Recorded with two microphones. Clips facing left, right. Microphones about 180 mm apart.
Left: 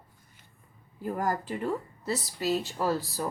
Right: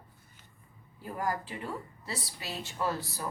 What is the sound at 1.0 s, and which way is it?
Speech, 45° left (ahead or behind).